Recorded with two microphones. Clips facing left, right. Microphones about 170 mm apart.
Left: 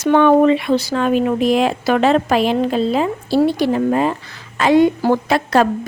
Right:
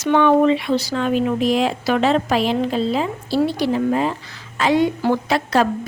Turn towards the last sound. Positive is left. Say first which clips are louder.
# left 3 dB
turn(degrees=50)  # may be behind; listen again after turning